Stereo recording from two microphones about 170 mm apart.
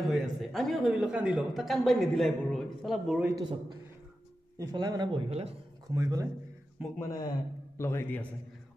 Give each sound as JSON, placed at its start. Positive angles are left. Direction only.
{"t": 0.0, "sound": "a man's voice", "side_deg": 0}
{"t": 3.3, "sound": "a man's voice", "side_deg": -25}
{"t": 5.9, "sound": "a man's voice", "side_deg": -20}
{"t": 7.0, "sound": "a man's voice", "side_deg": 20}